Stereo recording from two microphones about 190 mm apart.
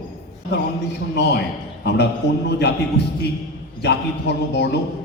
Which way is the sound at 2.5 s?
60° left (ahead or behind).